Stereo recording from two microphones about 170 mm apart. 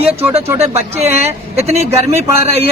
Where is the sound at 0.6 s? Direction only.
40° right (ahead or behind).